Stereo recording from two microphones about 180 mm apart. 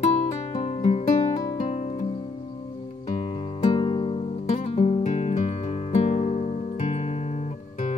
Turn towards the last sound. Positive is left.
turn(degrees=40)  # may be behind; listen again after turning